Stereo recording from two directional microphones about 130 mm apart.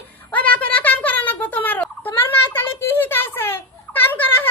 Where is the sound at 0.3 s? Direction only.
10° left (ahead or behind).